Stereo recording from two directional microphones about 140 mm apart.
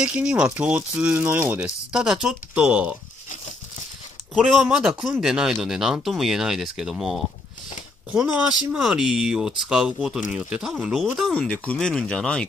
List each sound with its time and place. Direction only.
0.0 s speech: 10° right (ahead or behind)
4.4 s speech: 5° right (ahead or behind)